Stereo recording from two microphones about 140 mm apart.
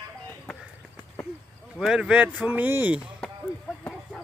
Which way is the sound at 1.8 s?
5° right (ahead or behind).